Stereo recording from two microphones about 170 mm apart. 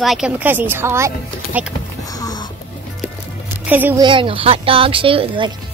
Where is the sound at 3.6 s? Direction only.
10° right (ahead or behind).